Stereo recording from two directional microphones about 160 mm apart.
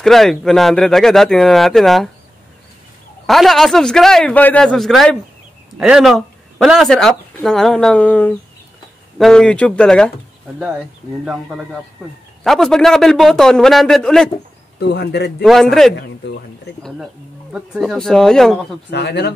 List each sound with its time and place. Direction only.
0.0 s speech: centre (ahead or behind)
3.3 s speech: centre (ahead or behind)
11.2 s speech: 5° right (ahead or behind)
14.8 s speech: 90° left
15.4 s speech: centre (ahead or behind)
18.9 s speech: 90° left